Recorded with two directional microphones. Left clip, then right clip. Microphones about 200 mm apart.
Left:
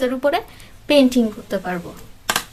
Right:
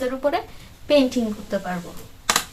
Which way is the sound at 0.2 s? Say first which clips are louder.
Left 3 dB; 45° left (ahead or behind).